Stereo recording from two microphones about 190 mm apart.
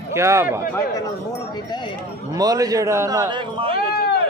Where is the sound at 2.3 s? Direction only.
20° right (ahead or behind).